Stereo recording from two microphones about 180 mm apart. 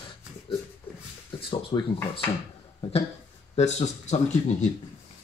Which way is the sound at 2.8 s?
35° left (ahead or behind).